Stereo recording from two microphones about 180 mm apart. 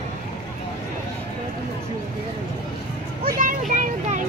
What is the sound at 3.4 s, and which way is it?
Speech, 45° right (ahead or behind).